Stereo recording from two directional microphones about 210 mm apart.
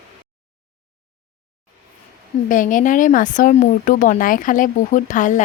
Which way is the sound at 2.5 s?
40° left (ahead or behind).